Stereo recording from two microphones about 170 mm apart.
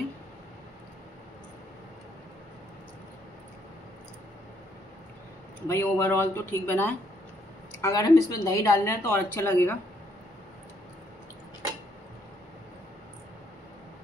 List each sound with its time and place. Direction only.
5.7 s speech: 15° left (ahead or behind)